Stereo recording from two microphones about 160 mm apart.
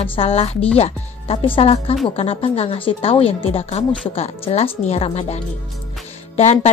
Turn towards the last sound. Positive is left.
turn(degrees=45)  # may be behind; listen again after turning